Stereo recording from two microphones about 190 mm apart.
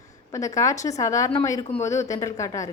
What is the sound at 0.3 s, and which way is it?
A woman's voice, 15° left (ahead or behind).